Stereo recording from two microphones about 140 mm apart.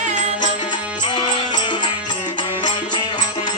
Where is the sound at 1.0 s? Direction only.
30° left (ahead or behind).